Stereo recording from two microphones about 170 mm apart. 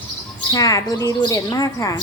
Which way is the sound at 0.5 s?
20° left (ahead or behind).